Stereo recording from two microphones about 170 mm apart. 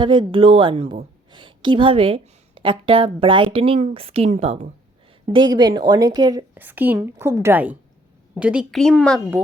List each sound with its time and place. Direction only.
0.0 s a woman's voice: 25° right (ahead or behind)
5.3 s speech: 25° right (ahead or behind)
6.5 s a woman's voice: 10° right (ahead or behind)